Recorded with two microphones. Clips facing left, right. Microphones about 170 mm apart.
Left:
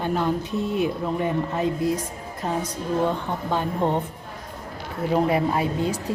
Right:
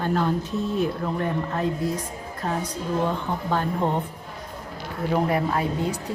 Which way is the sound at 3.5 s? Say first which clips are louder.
Left 1 dB; 15° left (ahead or behind).